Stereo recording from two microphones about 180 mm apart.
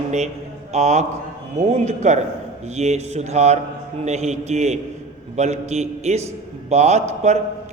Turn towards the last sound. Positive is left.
turn(degrees=-40)  # may be behind; listen again after turning